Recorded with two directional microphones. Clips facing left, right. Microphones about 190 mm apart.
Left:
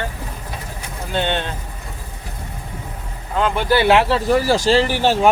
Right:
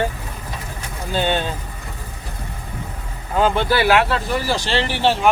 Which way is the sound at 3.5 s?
20° left (ahead or behind).